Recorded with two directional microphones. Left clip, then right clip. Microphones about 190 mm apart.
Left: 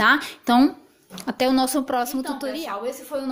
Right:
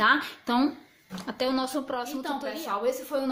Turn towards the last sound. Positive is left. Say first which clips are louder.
# even
turn(degrees=0)  # may be behind; listen again after turning